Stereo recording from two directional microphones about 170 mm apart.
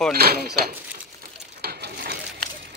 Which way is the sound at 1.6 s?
70° right (ahead or behind).